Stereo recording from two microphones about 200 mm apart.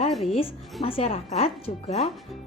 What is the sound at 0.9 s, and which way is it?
Speech, 30° left (ahead or behind).